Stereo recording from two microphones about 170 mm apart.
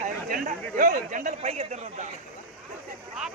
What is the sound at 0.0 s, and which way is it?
A man's voice, 50° right (ahead or behind).